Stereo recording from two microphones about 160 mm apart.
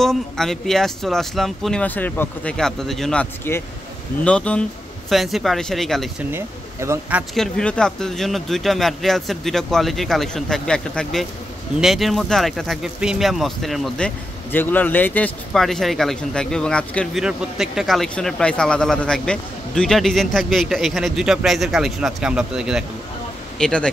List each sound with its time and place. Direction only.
0.0 s speech: centre (ahead or behind)
6.3 s speech: 15° right (ahead or behind)
7.3 s speech: 5° left (ahead or behind)